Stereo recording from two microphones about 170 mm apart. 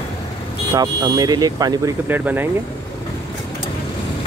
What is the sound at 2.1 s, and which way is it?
Speech, 10° right (ahead or behind).